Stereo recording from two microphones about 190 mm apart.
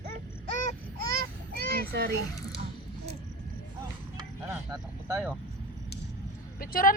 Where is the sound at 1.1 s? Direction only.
55° right (ahead or behind).